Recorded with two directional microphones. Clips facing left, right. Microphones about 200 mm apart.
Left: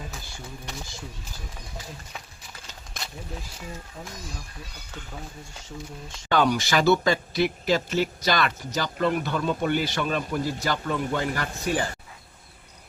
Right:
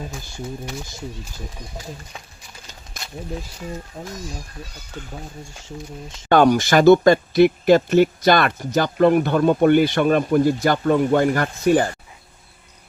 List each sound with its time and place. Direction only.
4.0 s speech: 35° right (ahead or behind)
6.2 s speech: 50° right (ahead or behind)